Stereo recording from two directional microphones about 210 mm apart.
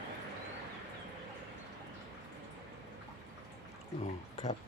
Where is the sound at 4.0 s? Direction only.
35° left (ahead or behind).